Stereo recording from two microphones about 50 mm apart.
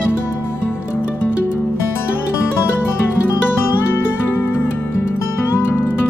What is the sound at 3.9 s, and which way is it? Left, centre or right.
Music, left.